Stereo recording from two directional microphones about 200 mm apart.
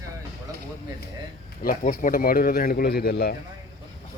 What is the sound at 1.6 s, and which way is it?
Speech, 45° left (ahead or behind).